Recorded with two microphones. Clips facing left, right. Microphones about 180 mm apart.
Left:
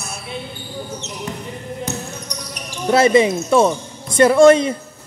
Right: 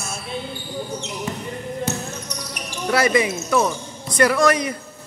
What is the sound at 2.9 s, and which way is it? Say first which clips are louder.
Speech: left 6 dB; 25° left (ahead or behind).